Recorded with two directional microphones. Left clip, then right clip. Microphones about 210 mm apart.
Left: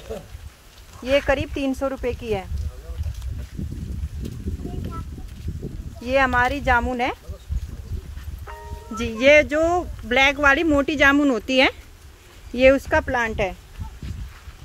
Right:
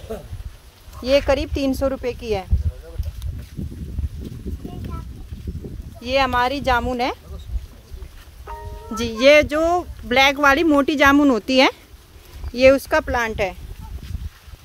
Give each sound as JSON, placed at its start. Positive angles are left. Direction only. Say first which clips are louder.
{"t": 1.0, "sound": "speech", "louder": "right 3 dB", "side_deg": -15}
{"t": 6.0, "sound": "speech", "louder": "even", "side_deg": -15}
{"t": 8.5, "sound": "speech", "louder": "right 4 dB", "side_deg": -20}